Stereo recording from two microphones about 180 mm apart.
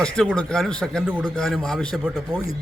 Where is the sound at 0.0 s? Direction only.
5° left (ahead or behind).